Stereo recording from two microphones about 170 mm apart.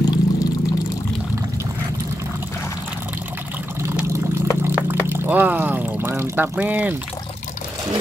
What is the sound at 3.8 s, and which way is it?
Water, 15° right (ahead or behind).